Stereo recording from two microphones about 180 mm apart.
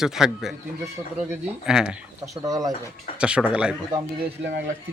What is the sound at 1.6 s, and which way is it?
Speech, 5° right (ahead or behind).